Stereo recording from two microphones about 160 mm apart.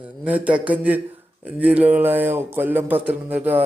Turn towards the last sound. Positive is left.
turn(degrees=-10)  # may be behind; listen again after turning